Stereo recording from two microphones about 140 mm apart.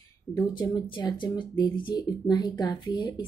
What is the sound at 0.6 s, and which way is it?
Speech, 35° left (ahead or behind).